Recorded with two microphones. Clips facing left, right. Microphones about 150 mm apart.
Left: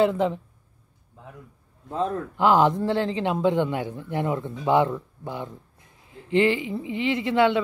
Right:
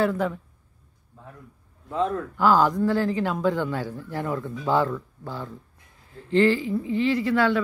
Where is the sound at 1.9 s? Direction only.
35° left (ahead or behind).